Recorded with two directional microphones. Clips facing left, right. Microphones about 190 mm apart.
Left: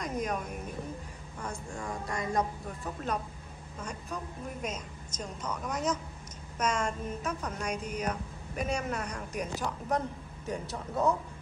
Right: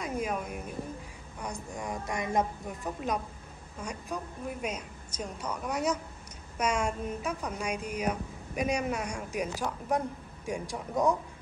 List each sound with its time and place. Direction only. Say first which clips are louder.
0.0 s speech: right 1 dB; 5° right (ahead or behind)